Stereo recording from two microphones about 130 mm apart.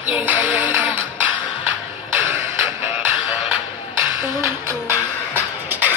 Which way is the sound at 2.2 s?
20° right (ahead or behind).